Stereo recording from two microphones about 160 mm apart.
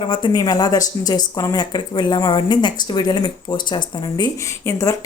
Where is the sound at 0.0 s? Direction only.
30° left (ahead or behind).